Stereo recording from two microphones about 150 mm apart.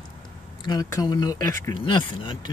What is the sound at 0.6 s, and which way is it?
Speech, 25° left (ahead or behind).